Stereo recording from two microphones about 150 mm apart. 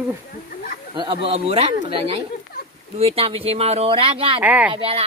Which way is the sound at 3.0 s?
40° right (ahead or behind).